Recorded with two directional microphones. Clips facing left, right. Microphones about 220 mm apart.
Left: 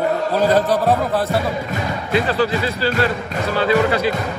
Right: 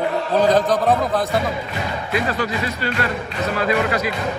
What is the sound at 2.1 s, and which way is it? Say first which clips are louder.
Speech: left 5 dB; 30° left (ahead or behind).